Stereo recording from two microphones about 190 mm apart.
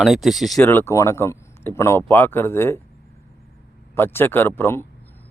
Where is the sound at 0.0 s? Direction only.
Centre (ahead or behind).